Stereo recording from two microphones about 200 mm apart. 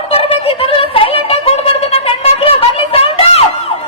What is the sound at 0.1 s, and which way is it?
Music, 30° left (ahead or behind).